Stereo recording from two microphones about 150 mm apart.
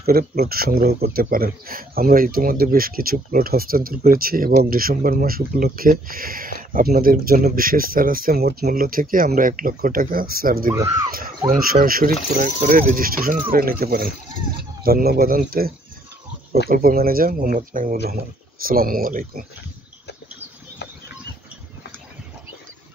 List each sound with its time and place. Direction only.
0.0 s speech: 80° right
16.7 s speech: 75° right (ahead or behind)